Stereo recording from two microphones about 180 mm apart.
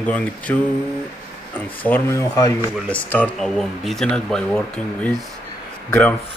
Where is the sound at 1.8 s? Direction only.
10° left (ahead or behind).